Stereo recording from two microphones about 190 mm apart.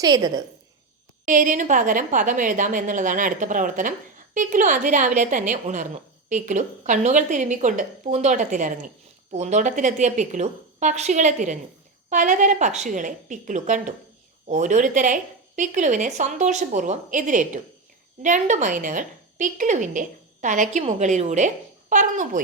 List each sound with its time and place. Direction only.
0.0 s a woman's voice: 20° right (ahead or behind)
1.2 s a woman's voice: 45° right (ahead or behind)